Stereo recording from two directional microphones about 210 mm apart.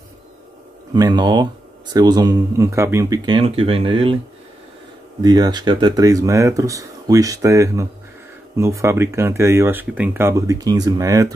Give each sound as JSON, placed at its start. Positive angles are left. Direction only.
{"t": 0.9, "sound": "speech", "side_deg": -20}
{"t": 5.2, "sound": "speech", "side_deg": -20}